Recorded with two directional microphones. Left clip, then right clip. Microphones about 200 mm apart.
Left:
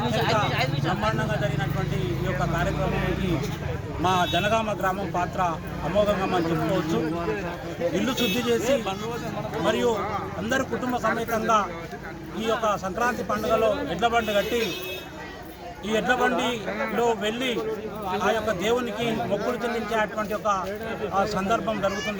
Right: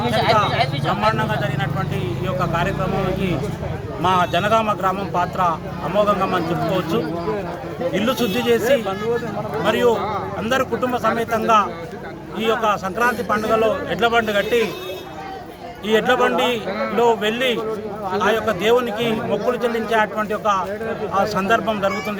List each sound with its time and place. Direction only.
1.0 s a man's voice: centre (ahead or behind)
4.0 s a man's voice: centre (ahead or behind)
7.9 s a man's voice: centre (ahead or behind)
15.9 s a man's voice: 5° right (ahead or behind)